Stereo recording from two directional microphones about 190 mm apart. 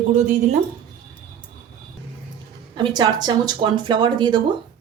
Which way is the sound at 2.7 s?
20° right (ahead or behind).